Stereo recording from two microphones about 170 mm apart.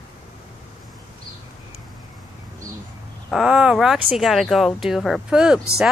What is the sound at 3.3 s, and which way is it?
Speech, 5° right (ahead or behind).